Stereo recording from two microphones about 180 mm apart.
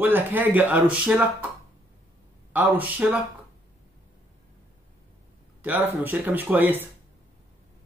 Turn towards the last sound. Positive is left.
turn(degrees=-10)  # may be behind; listen again after turning